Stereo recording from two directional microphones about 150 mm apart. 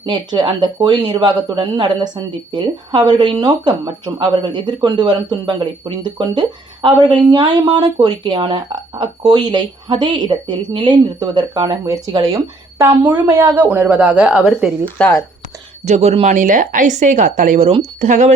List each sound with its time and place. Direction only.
0.0 s speech: 30° right (ahead or behind)
6.8 s speech: 30° right (ahead or behind); by 14.7 s 5° right (ahead or behind)
14.8 s speech: 10° left (ahead or behind)
15.8 s speech: 50° right (ahead or behind)